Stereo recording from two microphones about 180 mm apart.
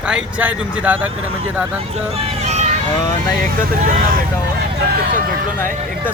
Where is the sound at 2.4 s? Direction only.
40° right (ahead or behind).